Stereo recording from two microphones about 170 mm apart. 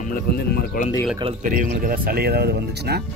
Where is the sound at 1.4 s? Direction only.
55° right (ahead or behind); by 2.9 s 70° right (ahead or behind).